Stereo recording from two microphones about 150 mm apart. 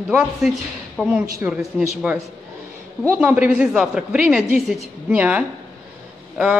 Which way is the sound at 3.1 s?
10° right (ahead or behind).